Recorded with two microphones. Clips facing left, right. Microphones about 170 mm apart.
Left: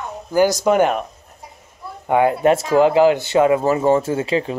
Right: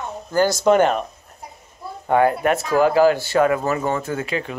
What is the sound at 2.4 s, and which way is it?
Speech, 25° left (ahead or behind).